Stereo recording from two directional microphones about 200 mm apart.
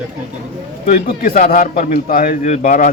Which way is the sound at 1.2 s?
45° left (ahead or behind).